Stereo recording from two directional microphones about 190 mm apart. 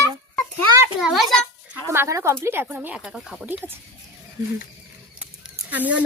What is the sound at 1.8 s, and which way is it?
Speech, 15° right (ahead or behind).